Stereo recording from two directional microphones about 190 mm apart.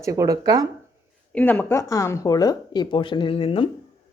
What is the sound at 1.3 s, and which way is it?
Speech, 10° left (ahead or behind).